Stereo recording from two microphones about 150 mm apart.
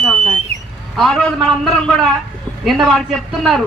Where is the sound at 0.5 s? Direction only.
45° right (ahead or behind).